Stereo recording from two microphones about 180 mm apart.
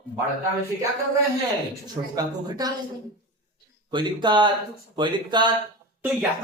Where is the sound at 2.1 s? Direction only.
20° right (ahead or behind).